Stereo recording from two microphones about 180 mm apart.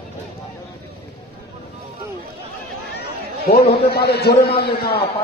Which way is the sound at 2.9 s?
60° left (ahead or behind).